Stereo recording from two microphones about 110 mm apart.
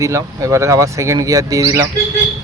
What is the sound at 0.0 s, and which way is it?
Speech, 30° right (ahead or behind).